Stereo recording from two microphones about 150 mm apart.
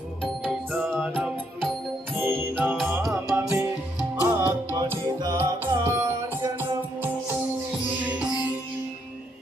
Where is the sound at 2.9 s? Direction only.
Centre (ahead or behind).